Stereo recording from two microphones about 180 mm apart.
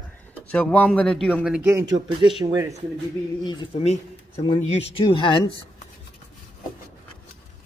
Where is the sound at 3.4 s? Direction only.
25° left (ahead or behind).